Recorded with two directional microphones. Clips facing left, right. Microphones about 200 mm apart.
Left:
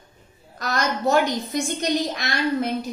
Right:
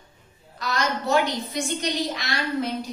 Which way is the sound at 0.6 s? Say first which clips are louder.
Left 2 dB; 45° left (ahead or behind).